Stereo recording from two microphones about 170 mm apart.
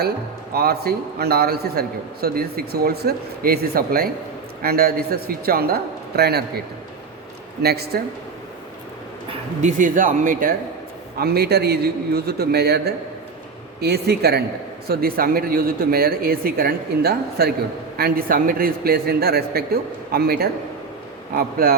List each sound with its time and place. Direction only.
0.5 s a man's voice: 65° right (ahead or behind)
7.6 s a man's voice: 70° right (ahead or behind)
9.6 s speech: 45° right (ahead or behind)
11.2 s a man's voice: 70° right (ahead or behind)